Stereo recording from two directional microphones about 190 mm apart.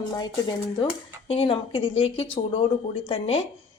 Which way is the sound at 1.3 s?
30° left (ahead or behind).